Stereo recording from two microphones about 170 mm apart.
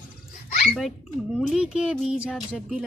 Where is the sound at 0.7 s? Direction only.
Centre (ahead or behind).